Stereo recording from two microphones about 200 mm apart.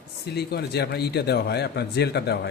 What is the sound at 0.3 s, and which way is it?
A man's voice, 55° left (ahead or behind).